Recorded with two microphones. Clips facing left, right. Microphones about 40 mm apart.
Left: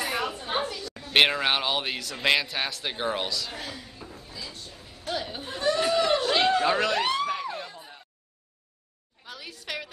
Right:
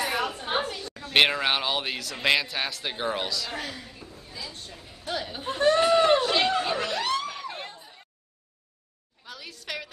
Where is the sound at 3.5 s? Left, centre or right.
Right.